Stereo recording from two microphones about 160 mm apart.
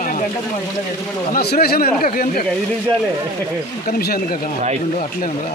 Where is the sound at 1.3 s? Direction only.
80° left; by 2.4 s 60° left (ahead or behind).